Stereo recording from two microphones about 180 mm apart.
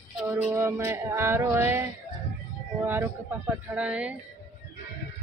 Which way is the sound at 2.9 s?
10° right (ahead or behind).